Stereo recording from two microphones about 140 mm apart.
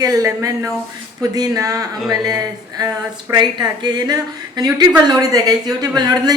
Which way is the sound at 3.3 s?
30° right (ahead or behind).